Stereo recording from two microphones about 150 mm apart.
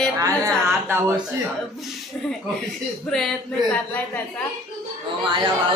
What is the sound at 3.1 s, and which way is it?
Speech, 5° left (ahead or behind).